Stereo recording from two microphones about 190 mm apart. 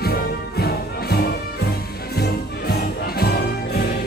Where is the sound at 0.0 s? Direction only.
55° left (ahead or behind).